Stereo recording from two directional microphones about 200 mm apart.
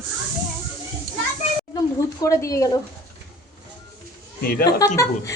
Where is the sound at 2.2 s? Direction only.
15° left (ahead or behind).